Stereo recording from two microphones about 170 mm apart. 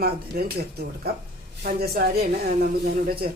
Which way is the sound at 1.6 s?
65° right (ahead or behind).